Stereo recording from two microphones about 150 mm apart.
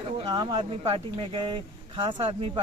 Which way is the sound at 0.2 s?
30° right (ahead or behind).